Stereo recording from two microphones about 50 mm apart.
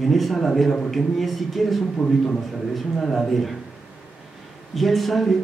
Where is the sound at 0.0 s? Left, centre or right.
Centre.